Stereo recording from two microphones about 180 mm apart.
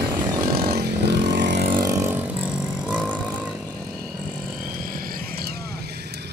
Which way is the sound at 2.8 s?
5° right (ahead or behind).